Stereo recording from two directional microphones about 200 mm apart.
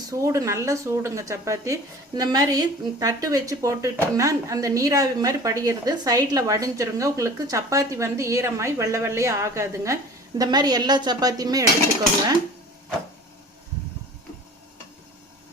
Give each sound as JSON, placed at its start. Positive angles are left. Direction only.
{"t": 0.1, "sound": "a woman's voice", "side_deg": -15}